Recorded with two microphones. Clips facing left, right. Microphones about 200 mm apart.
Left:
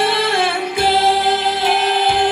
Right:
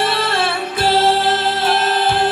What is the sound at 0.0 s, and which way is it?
Music, 15° left (ahead or behind).